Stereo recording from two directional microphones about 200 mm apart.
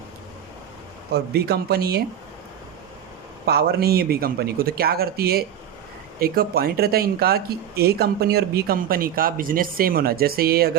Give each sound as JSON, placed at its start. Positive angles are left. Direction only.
{"t": 1.1, "sound": "speech", "side_deg": -50}
{"t": 3.4, "sound": "speech", "side_deg": -50}